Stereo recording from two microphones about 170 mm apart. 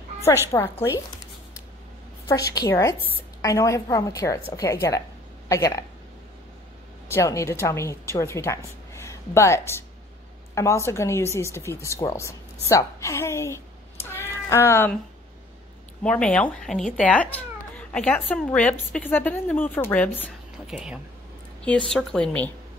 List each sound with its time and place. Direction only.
0.5 s speech: 15° left (ahead or behind)
2.2 s a woman's voice: 20° left (ahead or behind)
7.1 s a woman's voice: 15° left (ahead or behind)
16.0 s speech: 5° left (ahead or behind)
20.6 s speech: 5° right (ahead or behind)